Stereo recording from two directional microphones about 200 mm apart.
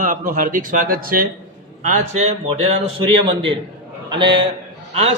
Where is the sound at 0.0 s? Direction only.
40° right (ahead or behind).